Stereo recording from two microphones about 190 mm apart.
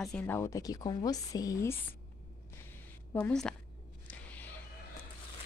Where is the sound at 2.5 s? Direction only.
10° left (ahead or behind).